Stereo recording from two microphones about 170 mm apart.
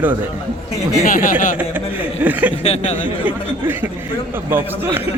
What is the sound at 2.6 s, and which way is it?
Speech, 40° left (ahead or behind).